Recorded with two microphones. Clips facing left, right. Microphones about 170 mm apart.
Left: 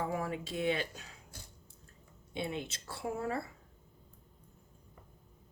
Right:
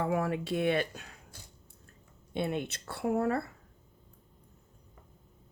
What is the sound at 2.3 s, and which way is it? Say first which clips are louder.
Speech: right 5 dB; 60° right (ahead or behind).